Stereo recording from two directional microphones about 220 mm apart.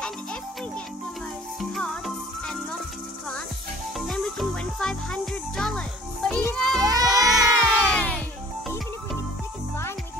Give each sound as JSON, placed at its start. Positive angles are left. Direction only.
{"t": 1.6, "sound": "music", "side_deg": 0}
{"t": 4.1, "sound": "music", "side_deg": 0}
{"t": 6.8, "sound": "a sound", "side_deg": -15}
{"t": 7.2, "sound": "music", "side_deg": 0}